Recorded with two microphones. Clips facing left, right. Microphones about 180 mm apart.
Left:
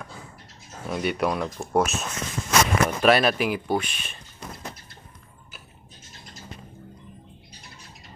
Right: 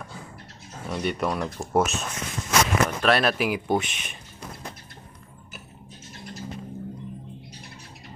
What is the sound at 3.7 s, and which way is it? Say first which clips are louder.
Speech: right 1 dB; 20° right (ahead or behind).